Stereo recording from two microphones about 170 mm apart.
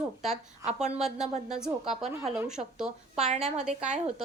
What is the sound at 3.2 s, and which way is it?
Speech, 40° right (ahead or behind).